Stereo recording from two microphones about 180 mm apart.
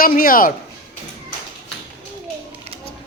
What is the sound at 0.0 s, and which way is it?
Speech, 50° left (ahead or behind).